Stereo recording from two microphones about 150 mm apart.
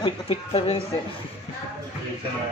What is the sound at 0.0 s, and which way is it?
Speech, 40° left (ahead or behind).